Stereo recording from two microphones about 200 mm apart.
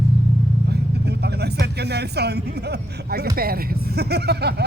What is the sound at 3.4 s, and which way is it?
Speech, 50° right (ahead or behind).